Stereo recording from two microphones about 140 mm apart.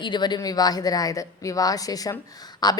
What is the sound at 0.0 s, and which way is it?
A woman's voice, 30° left (ahead or behind).